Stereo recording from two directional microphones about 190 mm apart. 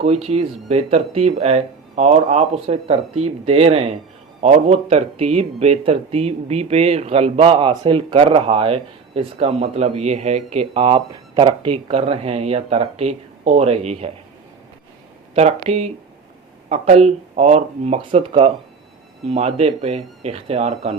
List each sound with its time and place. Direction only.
0.0 s speech: 35° right (ahead or behind)
15.4 s speech: 35° right (ahead or behind)